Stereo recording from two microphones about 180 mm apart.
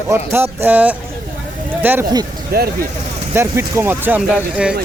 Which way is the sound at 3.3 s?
15° right (ahead or behind).